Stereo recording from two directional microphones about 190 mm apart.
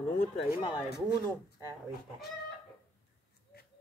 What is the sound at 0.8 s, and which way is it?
Speech, centre (ahead or behind).